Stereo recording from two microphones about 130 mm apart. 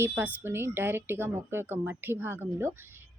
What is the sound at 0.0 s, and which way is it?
Speech, 10° right (ahead or behind).